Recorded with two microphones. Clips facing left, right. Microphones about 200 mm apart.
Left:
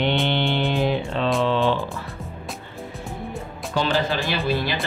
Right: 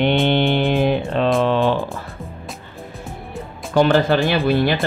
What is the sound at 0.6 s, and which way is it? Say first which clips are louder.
Music: right 4 dB; 55° right (ahead or behind).